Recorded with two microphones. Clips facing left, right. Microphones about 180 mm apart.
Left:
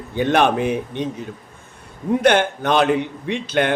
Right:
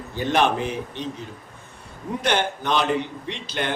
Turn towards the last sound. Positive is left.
turn(degrees=55)  # may be behind; listen again after turning